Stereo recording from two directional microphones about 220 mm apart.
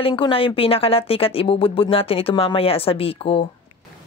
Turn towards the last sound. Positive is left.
turn(degrees=25)  # may be behind; listen again after turning